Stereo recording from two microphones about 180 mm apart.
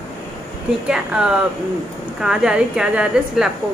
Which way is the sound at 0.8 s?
5° right (ahead or behind).